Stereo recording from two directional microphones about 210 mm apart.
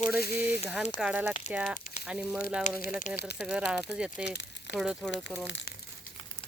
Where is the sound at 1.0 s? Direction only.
5° right (ahead or behind).